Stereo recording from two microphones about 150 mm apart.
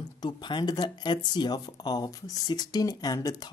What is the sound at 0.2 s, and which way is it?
Speech, 30° left (ahead or behind).